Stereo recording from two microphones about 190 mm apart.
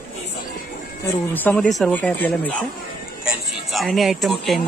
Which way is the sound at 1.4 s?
5° left (ahead or behind).